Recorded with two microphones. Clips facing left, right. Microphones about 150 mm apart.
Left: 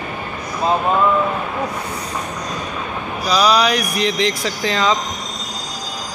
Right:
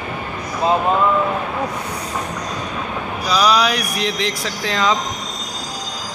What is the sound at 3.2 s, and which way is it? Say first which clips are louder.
Speech: left 1 dB; centre (ahead or behind).